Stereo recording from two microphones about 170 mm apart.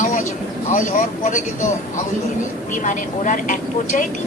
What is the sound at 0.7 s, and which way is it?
A woman's voice, 50° left (ahead or behind).